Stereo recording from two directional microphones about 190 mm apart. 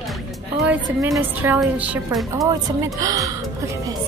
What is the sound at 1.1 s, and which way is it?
A woman's voice, 10° right (ahead or behind).